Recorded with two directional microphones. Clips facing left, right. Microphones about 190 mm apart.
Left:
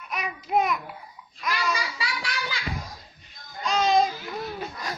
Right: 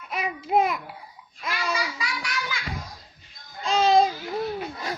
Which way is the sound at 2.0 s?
30° left (ahead or behind).